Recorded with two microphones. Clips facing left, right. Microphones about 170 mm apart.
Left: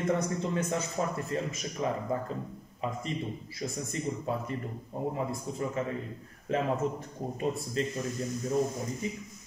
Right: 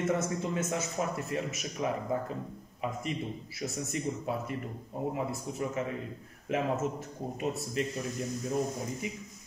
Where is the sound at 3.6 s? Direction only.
15° left (ahead or behind).